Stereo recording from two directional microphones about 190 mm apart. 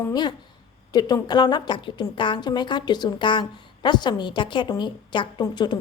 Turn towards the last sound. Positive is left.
turn(degrees=25)  # may be behind; listen again after turning